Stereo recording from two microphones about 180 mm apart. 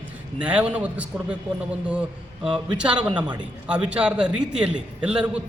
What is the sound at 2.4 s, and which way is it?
Speech, 25° right (ahead or behind).